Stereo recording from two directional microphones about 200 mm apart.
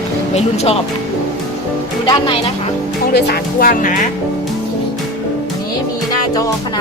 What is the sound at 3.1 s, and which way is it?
Speech, 50° left (ahead or behind).